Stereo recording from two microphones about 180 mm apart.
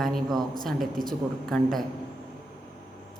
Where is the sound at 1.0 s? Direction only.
50° right (ahead or behind).